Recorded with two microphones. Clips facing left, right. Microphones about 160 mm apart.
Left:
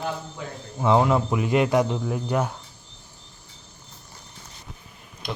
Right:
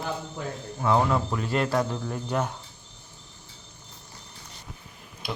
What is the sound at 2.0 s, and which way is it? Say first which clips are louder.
Speech: left 3 dB; 5° left (ahead or behind).